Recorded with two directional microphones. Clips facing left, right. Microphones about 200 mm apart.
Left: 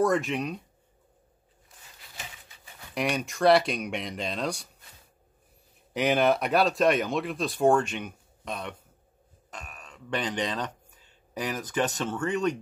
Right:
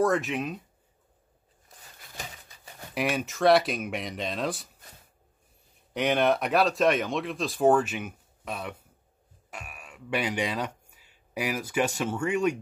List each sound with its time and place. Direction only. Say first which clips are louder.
0.0 s speech: even; centre (ahead or behind)
1.7 s a sound: right 3 dB; 40° right (ahead or behind)
2.9 s speech: even; 5° right (ahead or behind)
5.9 s speech: left 1 dB; centre (ahead or behind)